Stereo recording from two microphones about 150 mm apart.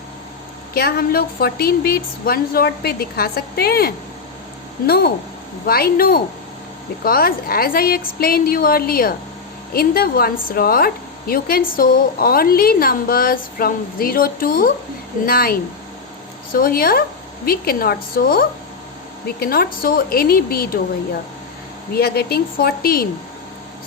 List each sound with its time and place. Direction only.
0.7 s a woman's voice: 90° left
9.7 s a woman's voice: 90° left; by 14.7 s 70° left (ahead or behind)
15.3 s a woman's voice: 90° left
16.5 s a woman's voice: 75° left (ahead or behind)
19.4 s a woman's voice: 90° left
21.9 s a woman's voice: 90° left